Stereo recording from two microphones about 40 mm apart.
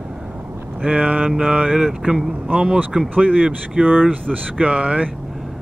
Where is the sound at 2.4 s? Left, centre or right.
Right.